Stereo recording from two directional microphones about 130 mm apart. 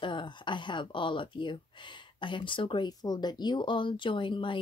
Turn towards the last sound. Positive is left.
turn(degrees=40)  # may be behind; listen again after turning